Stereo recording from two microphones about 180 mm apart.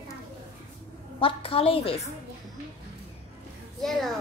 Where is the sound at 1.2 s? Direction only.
30° left (ahead or behind).